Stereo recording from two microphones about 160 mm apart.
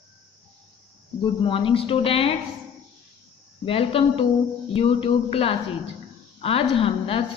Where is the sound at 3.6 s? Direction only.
35° left (ahead or behind).